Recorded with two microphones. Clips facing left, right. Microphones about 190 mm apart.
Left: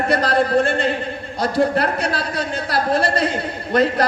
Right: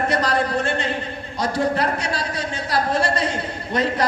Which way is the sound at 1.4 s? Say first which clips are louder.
Left 3 dB; 55° left (ahead or behind).